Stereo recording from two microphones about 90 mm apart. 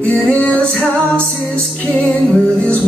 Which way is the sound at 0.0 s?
15° left (ahead or behind).